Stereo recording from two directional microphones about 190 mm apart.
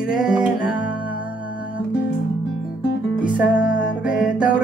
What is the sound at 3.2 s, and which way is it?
Music, 5° right (ahead or behind).